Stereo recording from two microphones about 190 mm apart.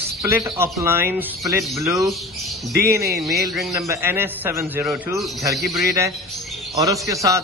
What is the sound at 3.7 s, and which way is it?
A man's voice, 15° right (ahead or behind).